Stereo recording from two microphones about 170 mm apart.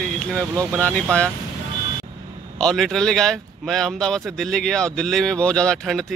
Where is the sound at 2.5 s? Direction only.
5° left (ahead or behind).